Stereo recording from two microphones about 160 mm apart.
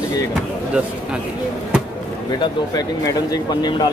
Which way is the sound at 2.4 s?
25° left (ahead or behind).